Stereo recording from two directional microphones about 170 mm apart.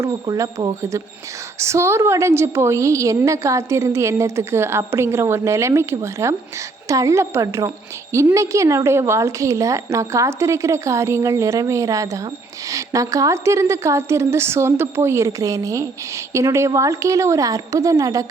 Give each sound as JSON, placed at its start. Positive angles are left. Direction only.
{"t": 0.0, "sound": "a woman's voice", "side_deg": -20}